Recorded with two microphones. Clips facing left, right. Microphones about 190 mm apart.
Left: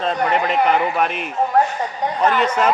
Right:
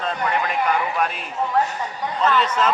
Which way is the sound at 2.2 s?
55° left (ahead or behind).